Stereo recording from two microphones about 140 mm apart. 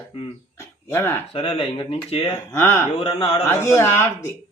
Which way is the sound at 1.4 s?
45° left (ahead or behind).